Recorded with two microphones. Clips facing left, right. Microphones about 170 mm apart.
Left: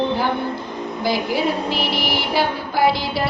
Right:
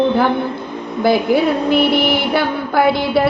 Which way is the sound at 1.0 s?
55° right (ahead or behind).